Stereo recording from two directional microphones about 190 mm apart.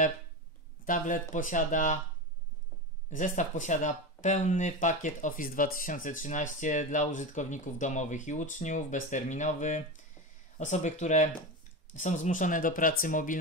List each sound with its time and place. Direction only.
0.8 s speech: 45° left (ahead or behind)
3.1 s speech: 40° left (ahead or behind)